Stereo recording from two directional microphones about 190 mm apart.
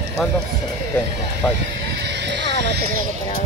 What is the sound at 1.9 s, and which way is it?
Music, 60° right (ahead or behind).